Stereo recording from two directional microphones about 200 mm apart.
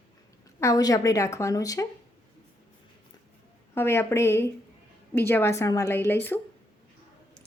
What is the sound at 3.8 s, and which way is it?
Speech, 10° left (ahead or behind).